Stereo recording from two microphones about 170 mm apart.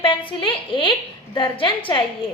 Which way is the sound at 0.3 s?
30° left (ahead or behind).